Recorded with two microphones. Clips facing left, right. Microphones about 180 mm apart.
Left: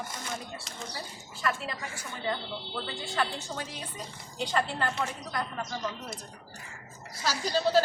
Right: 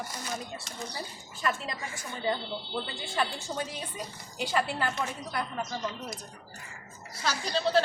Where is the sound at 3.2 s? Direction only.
15° right (ahead or behind).